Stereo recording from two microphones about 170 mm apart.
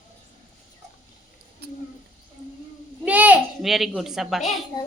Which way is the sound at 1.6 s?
80° right.